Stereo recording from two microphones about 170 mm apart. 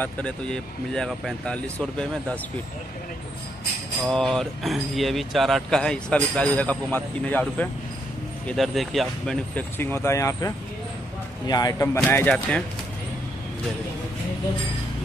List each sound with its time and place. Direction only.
0.0 s speech: 5° left (ahead or behind)
4.1 s speech: centre (ahead or behind)